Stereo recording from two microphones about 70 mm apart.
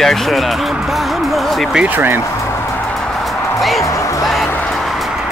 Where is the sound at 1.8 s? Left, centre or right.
Right.